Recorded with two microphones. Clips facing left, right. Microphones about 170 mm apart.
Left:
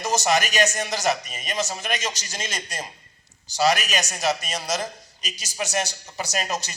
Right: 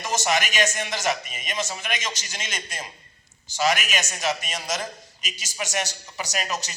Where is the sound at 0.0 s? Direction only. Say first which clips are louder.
Left 3 dB; 40° left (ahead or behind).